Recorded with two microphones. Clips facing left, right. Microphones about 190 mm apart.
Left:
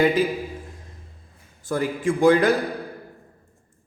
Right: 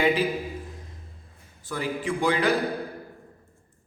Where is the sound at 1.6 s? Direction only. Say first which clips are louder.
Left 6 dB; 45° left (ahead or behind).